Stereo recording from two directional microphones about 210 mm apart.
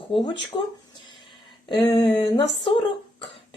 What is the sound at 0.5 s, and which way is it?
Speech, 20° left (ahead or behind).